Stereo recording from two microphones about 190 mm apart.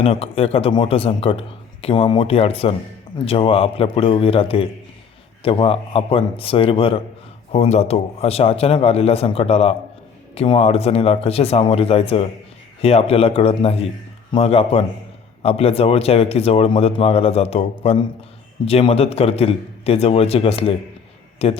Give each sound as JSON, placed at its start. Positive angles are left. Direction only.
{"t": 0.0, "sound": "a man's voice", "side_deg": 30}